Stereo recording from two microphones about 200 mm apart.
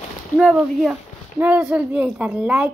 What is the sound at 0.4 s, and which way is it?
A woman's voice, 5° right (ahead or behind).